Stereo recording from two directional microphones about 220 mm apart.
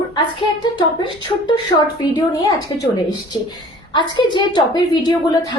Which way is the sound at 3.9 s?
20° left (ahead or behind).